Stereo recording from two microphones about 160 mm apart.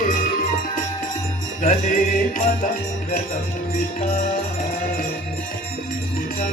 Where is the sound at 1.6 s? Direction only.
50° left (ahead or behind).